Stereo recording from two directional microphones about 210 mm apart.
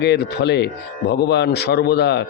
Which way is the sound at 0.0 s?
55° left (ahead or behind).